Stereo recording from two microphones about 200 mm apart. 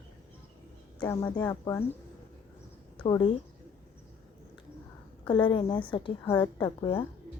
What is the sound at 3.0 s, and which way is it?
Speech, 25° left (ahead or behind).